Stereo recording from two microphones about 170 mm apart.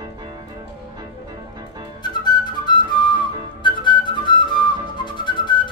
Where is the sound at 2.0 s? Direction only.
25° left (ahead or behind).